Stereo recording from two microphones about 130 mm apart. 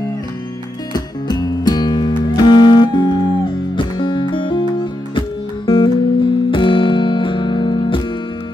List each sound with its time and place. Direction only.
0.9 s music: 30° left (ahead or behind)
5.7 s music: 40° left (ahead or behind)